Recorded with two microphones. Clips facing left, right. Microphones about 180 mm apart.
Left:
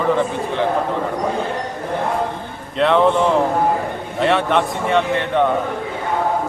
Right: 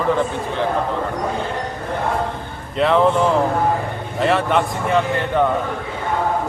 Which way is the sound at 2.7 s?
Centre (ahead or behind).